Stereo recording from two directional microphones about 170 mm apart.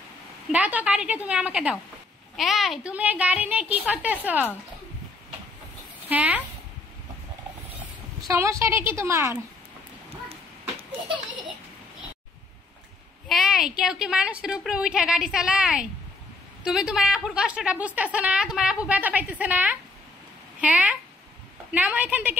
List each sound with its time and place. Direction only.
0.5 s a woman's voice: 10° right (ahead or behind)
6.0 s speech: 10° right (ahead or behind)
8.2 s a woman's voice: 15° right (ahead or behind)
13.3 s a woman's voice: centre (ahead or behind)